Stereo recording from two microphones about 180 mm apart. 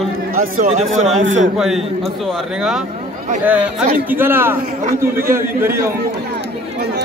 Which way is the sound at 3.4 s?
10° right (ahead or behind).